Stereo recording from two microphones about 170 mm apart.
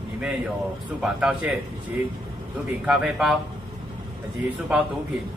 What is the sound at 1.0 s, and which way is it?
Speech, 5° right (ahead or behind).